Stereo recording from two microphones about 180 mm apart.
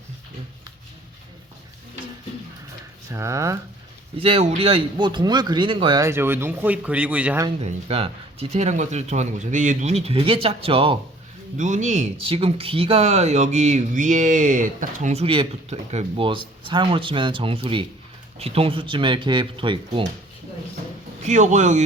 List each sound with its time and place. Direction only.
3.1 s speech: 15° right (ahead or behind)
4.2 s speech: 35° right (ahead or behind)
6.1 s speech: 15° right (ahead or behind)
7.6 s speech: 35° right (ahead or behind)
11.5 s speech: 45° right (ahead or behind); by 20.1 s 30° right (ahead or behind)
21.2 s speech: 40° right (ahead or behind)